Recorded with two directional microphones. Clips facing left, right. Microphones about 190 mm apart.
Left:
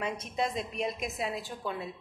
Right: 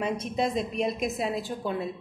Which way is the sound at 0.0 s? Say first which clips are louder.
Right 5 dB; 30° right (ahead or behind).